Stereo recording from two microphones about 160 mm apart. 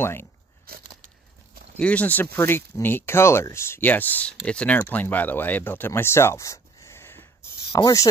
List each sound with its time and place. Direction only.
0.0 s speech: 15° left (ahead or behind)
1.8 s speech: 10° left (ahead or behind)